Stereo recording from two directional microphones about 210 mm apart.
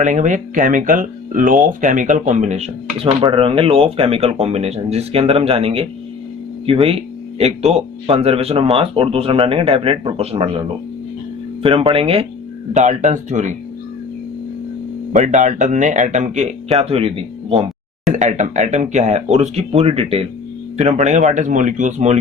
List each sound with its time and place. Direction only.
0.0 s speech: 35° right (ahead or behind)
15.1 s speech: 35° right (ahead or behind)